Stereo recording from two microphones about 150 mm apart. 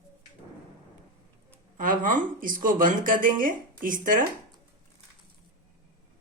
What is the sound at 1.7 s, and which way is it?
Speech, 65° right (ahead or behind).